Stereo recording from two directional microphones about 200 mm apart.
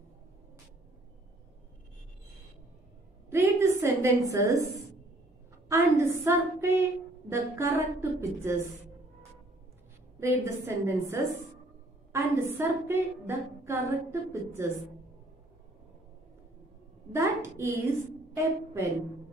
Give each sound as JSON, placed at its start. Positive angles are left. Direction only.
{"t": 3.3, "sound": "a sound", "side_deg": -15}
{"t": 4.3, "sound": "a woman's voice", "side_deg": -15}
{"t": 5.7, "sound": "a sound", "side_deg": -15}
{"t": 6.2, "sound": "a woman's voice", "side_deg": -15}
{"t": 10.2, "sound": "a woman's voice", "side_deg": -15}
{"t": 17.1, "sound": "a woman's voice", "side_deg": -15}